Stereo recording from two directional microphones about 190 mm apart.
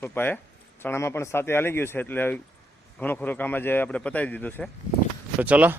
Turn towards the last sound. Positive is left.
turn(degrees=-10)  # may be behind; listen again after turning